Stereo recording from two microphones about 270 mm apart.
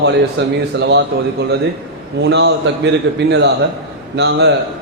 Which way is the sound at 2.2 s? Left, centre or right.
Right.